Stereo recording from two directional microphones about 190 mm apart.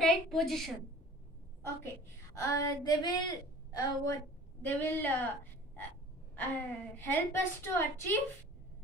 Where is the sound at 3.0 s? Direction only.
20° left (ahead or behind).